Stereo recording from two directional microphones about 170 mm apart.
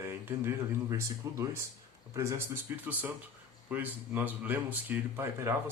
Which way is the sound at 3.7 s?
10° right (ahead or behind).